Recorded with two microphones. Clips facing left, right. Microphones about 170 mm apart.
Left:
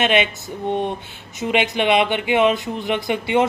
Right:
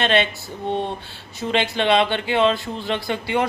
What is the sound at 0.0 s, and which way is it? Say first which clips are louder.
Speech: left 1 dB; 15° left (ahead or behind).